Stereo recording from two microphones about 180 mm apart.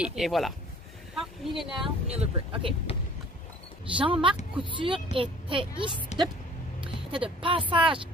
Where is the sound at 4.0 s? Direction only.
30° right (ahead or behind).